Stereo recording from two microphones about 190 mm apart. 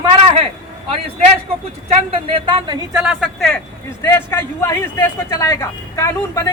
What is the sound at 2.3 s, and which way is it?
Speech, 25° right (ahead or behind).